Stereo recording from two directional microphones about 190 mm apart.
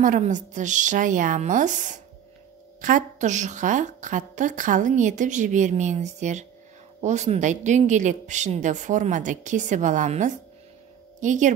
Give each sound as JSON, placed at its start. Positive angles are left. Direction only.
{"t": 0.0, "sound": "a woman's voice", "side_deg": -40}